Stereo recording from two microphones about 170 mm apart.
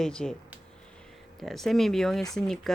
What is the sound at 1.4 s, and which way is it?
A woman's voice, centre (ahead or behind).